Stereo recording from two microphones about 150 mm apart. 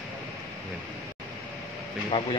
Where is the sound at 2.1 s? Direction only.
30° left (ahead or behind).